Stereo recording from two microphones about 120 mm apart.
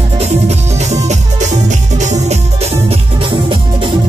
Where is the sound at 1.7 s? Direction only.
80° right.